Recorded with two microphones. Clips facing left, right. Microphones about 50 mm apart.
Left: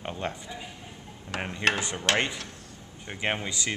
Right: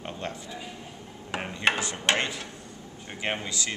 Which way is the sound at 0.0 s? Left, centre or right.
Centre.